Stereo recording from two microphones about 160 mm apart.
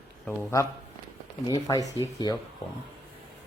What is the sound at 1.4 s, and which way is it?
Speech, 25° left (ahead or behind).